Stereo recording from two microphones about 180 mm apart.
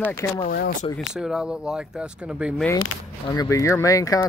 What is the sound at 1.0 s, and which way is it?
Speech, 5° right (ahead or behind).